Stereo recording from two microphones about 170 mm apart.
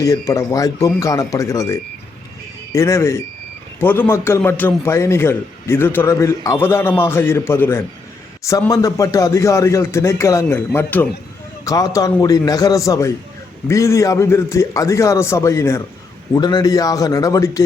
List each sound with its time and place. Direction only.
0.0 s a man's voice: 20° left (ahead or behind)